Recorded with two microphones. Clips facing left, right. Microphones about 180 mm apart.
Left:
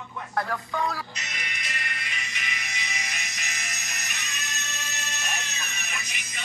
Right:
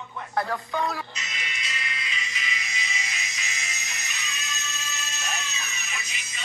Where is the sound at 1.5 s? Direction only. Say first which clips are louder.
Right 1 dB; 60° left (ahead or behind).